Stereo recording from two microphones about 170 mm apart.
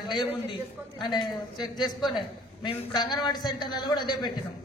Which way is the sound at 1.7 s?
Centre (ahead or behind).